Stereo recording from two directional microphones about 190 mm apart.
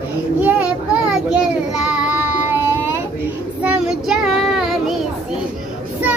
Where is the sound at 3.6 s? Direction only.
5° right (ahead or behind).